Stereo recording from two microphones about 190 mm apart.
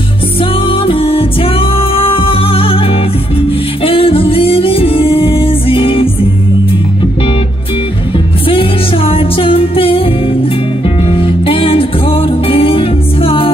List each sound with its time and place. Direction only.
0.4 s music: 30° left (ahead or behind)
8.5 s music: 30° left (ahead or behind)
11.1 s music: 30° left (ahead or behind)